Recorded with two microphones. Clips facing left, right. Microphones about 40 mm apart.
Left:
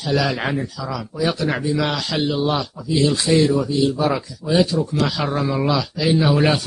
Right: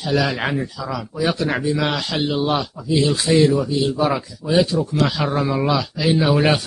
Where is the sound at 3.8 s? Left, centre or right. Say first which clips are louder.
Even; centre.